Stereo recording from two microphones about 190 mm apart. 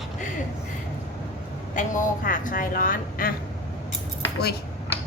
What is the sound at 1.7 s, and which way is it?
A woman's voice, 45° left (ahead or behind).